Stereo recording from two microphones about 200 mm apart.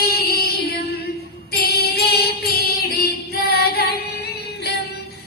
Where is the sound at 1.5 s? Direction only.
50° left (ahead or behind).